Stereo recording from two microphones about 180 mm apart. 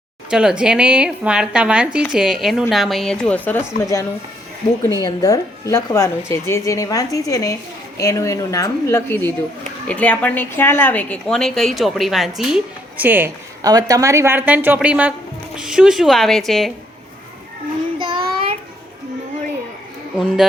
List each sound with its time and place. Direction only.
0.3 s a woman's voice: 5° right (ahead or behind)
18.0 s child singing: 30° right (ahead or behind)
20.1 s a woman's voice: centre (ahead or behind)